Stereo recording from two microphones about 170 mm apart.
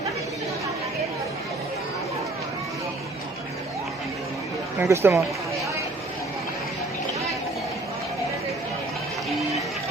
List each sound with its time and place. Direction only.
4.8 s speech: 15° right (ahead or behind)